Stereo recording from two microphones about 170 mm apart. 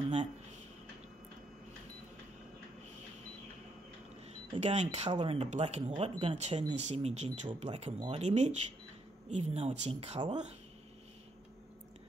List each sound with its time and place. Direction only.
4.6 s speech: 40° right (ahead or behind)